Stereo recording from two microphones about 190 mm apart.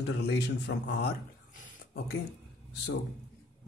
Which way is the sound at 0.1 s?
60° left (ahead or behind).